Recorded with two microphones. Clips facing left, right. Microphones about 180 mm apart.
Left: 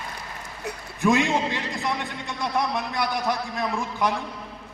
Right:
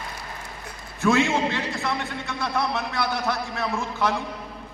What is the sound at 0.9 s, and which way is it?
A man's voice, 15° left (ahead or behind).